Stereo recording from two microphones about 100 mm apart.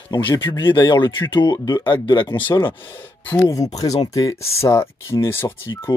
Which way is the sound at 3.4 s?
35° left (ahead or behind).